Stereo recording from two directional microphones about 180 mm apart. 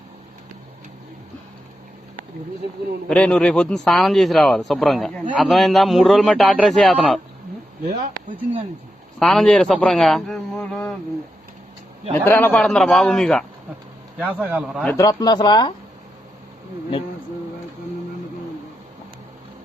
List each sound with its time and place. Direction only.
3.1 s a man's voice: 5° left (ahead or behind)
7.9 s speech: 45° right (ahead or behind)
9.1 s a man's voice: centre (ahead or behind)
12.1 s a man's voice: 10° left (ahead or behind)
14.2 s a man's voice: 10° right (ahead or behind)
14.9 s speech: 20° left (ahead or behind)